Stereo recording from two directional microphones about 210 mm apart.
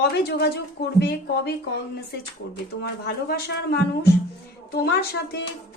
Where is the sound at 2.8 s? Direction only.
50° left (ahead or behind).